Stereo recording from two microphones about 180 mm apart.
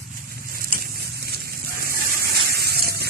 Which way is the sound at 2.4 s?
60° right (ahead or behind).